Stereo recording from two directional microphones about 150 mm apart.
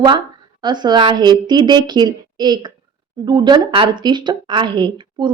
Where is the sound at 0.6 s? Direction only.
30° right (ahead or behind).